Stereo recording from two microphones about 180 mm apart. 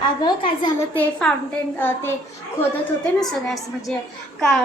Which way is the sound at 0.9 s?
5° left (ahead or behind).